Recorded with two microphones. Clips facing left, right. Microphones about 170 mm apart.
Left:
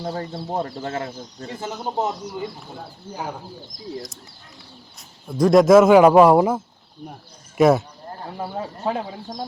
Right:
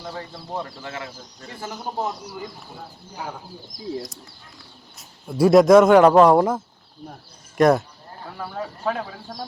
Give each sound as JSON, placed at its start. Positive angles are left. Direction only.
{"t": 0.0, "sound": "speech", "side_deg": 30}
{"t": 1.5, "sound": "speech", "side_deg": 20}
{"t": 4.9, "sound": "a man's voice", "side_deg": 0}
{"t": 8.4, "sound": "speech", "side_deg": 25}